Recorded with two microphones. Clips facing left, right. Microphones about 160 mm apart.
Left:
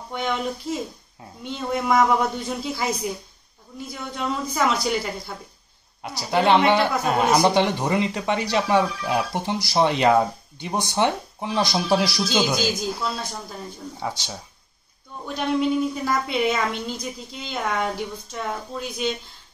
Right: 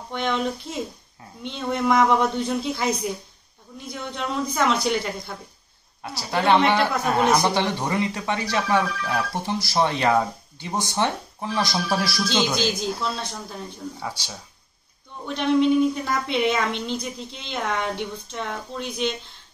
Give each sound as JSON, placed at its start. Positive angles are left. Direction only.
{"t": 0.1, "sound": "a woman's voice", "side_deg": 5}
{"t": 3.9, "sound": "a woman's voice", "side_deg": 5}
{"t": 6.0, "sound": "speech", "side_deg": 15}
{"t": 12.3, "sound": "a woman's voice", "side_deg": 5}
{"t": 13.9, "sound": "speech", "side_deg": 20}
{"t": 15.2, "sound": "a woman's voice", "side_deg": 5}